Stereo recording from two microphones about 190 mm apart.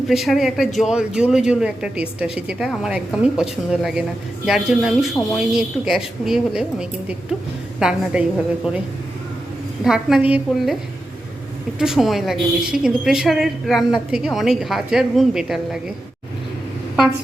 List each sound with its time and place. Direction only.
0.1 s a woman's voice: centre (ahead or behind)
9.8 s a woman's voice: centre (ahead or behind)
11.8 s a woman's voice: centre (ahead or behind)